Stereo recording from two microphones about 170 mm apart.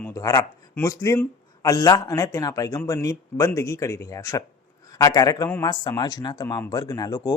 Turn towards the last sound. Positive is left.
turn(degrees=20)  # may be behind; listen again after turning